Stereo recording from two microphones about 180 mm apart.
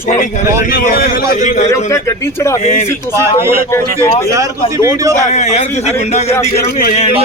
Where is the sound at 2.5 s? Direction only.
40° left (ahead or behind).